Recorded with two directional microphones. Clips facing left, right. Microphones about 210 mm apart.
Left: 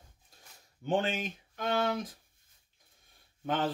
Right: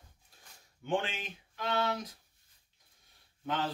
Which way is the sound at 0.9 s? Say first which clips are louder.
Left 3 dB; 40° left (ahead or behind).